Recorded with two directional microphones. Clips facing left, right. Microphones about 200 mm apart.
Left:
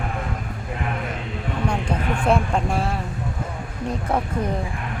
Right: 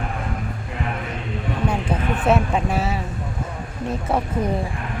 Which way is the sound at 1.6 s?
5° right (ahead or behind).